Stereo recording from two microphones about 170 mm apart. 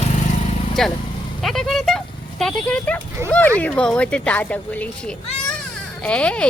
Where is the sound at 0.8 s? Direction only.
Centre (ahead or behind).